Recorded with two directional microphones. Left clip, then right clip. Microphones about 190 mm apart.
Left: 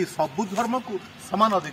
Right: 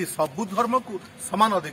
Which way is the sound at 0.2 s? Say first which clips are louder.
Right 3 dB; 35° right (ahead or behind).